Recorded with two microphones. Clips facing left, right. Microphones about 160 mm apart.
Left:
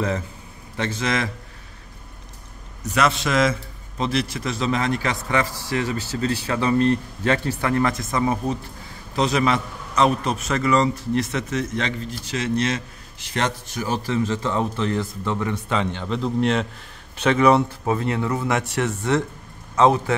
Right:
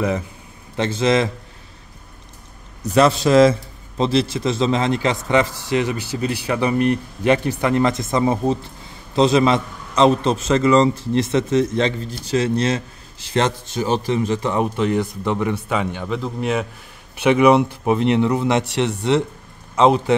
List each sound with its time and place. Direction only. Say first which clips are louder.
0.7 s a man's voice: right 7 dB; 25° right (ahead or behind)
2.9 s a man's voice: right 7 dB; 35° right (ahead or behind); by 20.2 s 20° right (ahead or behind)